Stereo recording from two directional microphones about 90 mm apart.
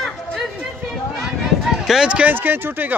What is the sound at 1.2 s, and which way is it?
Run, 5° right (ahead or behind).